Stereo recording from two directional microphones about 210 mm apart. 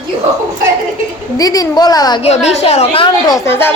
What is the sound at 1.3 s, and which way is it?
Speech, 15° left (ahead or behind).